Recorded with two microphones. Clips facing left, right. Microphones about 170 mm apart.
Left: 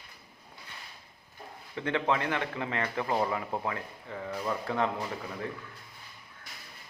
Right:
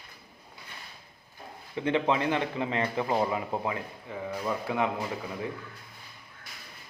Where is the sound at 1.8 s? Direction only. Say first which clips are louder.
Right 3 dB; 15° right (ahead or behind).